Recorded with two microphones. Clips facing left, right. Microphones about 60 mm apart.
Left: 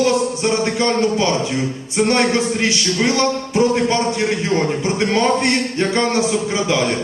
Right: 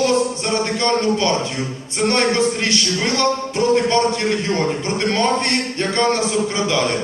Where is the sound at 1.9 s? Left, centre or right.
Centre.